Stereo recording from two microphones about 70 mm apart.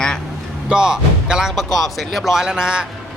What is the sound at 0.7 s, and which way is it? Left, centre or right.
Speech, centre.